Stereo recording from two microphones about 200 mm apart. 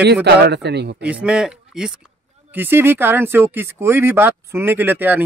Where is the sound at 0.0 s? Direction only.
55° right (ahead or behind).